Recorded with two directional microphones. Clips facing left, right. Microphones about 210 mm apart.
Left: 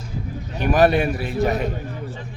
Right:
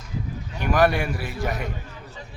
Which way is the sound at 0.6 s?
20° left (ahead or behind).